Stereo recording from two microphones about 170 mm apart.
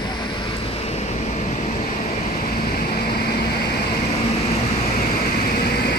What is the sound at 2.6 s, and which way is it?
Vehicle, 60° left (ahead or behind).